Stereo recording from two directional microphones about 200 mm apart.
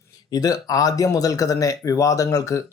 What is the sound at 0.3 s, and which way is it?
Speech, 20° left (ahead or behind).